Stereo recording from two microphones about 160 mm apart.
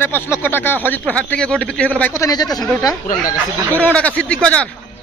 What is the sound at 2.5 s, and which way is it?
Speech, centre (ahead or behind).